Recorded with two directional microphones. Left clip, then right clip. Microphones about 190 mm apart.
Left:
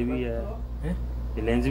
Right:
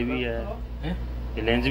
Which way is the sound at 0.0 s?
30° left (ahead or behind).